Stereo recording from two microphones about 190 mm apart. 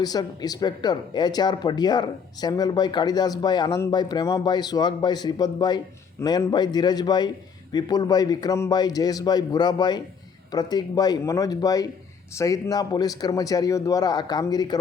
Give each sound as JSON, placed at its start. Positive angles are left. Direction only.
{"t": 0.0, "sound": "speech", "side_deg": 20}